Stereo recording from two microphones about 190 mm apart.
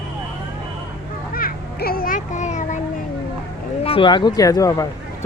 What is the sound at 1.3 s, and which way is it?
A child's voice, 50° left (ahead or behind).